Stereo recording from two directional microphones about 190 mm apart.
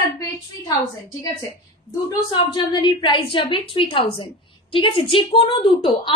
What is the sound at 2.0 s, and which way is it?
A woman's voice, 25° left (ahead or behind).